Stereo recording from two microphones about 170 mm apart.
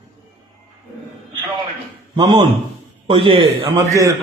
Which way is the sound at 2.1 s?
25° right (ahead or behind).